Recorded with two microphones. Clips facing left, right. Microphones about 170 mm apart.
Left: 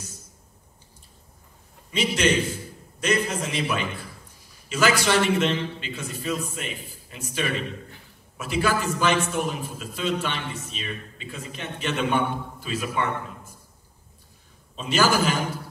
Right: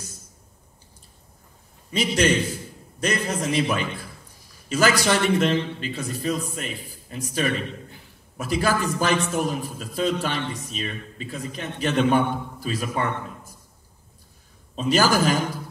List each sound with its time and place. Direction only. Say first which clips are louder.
1.9 s a man's voice: right 2 dB; 40° right (ahead or behind)
14.8 s a man's voice: right 2 dB; 40° right (ahead or behind)